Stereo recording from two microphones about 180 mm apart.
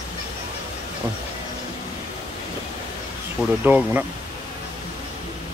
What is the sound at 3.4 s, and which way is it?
Speech, 10° right (ahead or behind).